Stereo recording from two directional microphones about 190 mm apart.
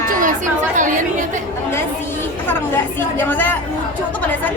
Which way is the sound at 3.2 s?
10° left (ahead or behind).